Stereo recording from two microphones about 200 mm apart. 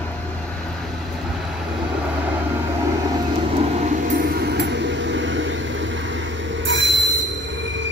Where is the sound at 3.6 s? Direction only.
35° right (ahead or behind); by 7.8 s 65° right (ahead or behind).